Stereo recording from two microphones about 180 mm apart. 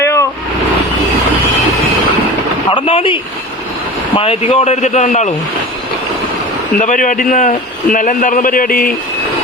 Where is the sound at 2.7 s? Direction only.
30° left (ahead or behind).